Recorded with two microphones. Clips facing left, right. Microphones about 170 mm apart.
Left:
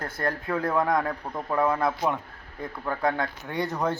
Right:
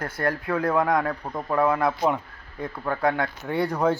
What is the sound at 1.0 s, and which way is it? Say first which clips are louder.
Speech: right 2 dB; centre (ahead or behind).